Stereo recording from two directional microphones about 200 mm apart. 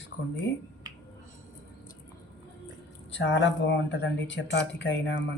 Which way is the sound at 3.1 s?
65° left (ahead or behind).